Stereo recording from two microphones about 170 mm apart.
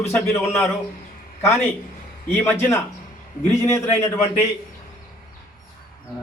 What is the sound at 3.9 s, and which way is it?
Speech, 15° left (ahead or behind).